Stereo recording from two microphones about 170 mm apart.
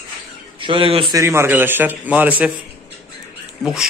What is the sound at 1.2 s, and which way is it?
A man's voice, 15° right (ahead or behind).